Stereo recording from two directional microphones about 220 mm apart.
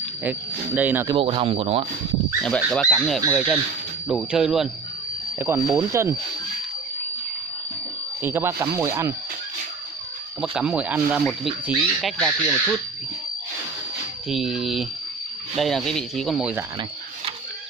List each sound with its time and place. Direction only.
0.2 s speech: 5° right (ahead or behind)
1.1 s speech: 25° right (ahead or behind)
2.4 s speech: centre (ahead or behind)
8.2 s speech: 10° right (ahead or behind)
10.4 s speech: 5° right (ahead or behind)
14.3 s speech: centre (ahead or behind)